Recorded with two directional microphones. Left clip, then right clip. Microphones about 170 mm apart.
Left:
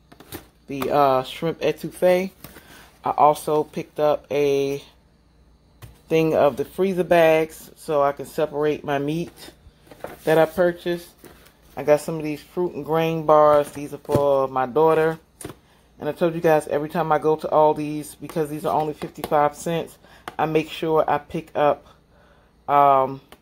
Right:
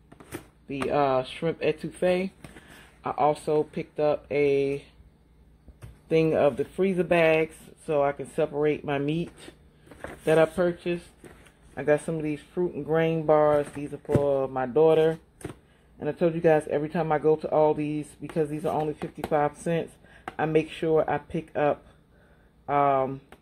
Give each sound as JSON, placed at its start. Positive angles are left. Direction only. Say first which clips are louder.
{"t": 0.7, "sound": "speech", "louder": "left 6 dB", "side_deg": 15}
{"t": 6.0, "sound": "speech", "louder": "left 4 dB", "side_deg": 10}